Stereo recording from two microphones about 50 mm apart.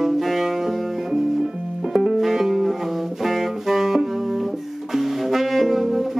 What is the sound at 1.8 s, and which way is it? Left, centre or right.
Music, centre.